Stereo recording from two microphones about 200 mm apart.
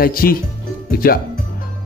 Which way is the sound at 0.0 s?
45° left (ahead or behind).